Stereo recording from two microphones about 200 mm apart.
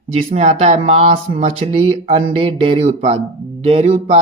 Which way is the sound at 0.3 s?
35° right (ahead or behind).